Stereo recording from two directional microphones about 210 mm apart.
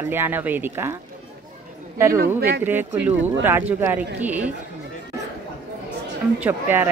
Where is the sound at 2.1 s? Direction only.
45° right (ahead or behind).